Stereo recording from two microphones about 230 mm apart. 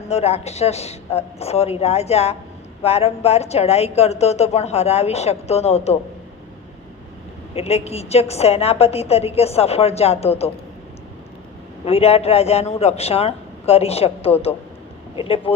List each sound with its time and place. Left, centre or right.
0.1 s a woman's voice: left
7.5 s a woman's voice: left
11.9 s a woman's voice: left